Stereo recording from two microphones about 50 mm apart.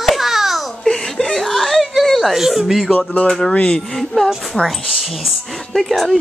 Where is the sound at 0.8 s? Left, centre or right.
Centre.